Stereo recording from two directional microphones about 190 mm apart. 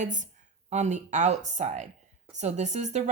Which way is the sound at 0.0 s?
40° right (ahead or behind).